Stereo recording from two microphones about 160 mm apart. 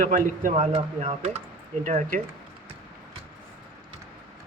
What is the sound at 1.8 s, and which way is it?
Speech, 55° right (ahead or behind).